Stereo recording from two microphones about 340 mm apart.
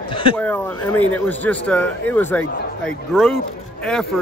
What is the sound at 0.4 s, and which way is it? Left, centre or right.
Speech, centre.